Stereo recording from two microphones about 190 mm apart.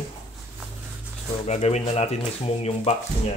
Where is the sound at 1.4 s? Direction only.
35° left (ahead or behind).